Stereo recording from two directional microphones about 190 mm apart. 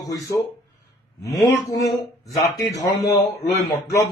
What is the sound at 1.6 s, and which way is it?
Speech, 15° left (ahead or behind).